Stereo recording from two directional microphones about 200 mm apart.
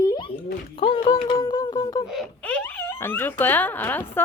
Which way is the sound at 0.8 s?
25° left (ahead or behind).